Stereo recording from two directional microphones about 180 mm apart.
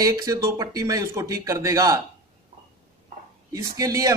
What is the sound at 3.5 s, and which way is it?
Speech, 20° right (ahead or behind).